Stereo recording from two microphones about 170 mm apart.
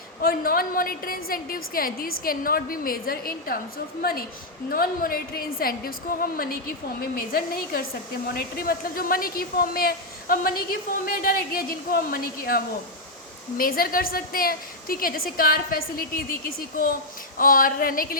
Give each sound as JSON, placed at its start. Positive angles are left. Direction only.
{"t": 0.2, "sound": "a woman's voice", "side_deg": 60}